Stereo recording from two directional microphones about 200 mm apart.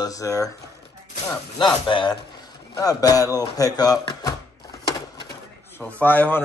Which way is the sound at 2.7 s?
20° left (ahead or behind).